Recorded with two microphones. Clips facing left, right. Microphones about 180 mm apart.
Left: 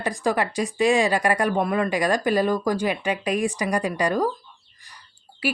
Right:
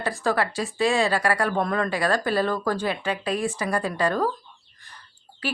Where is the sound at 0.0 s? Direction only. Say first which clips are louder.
Left 1 dB; 15° left (ahead or behind).